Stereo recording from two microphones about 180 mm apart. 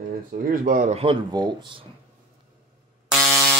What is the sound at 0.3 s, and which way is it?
Speech, 50° right (ahead or behind).